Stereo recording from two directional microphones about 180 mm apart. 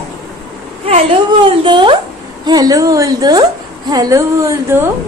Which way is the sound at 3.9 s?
20° right (ahead or behind).